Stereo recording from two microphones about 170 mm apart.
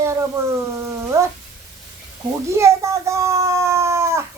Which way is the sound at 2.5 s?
15° right (ahead or behind).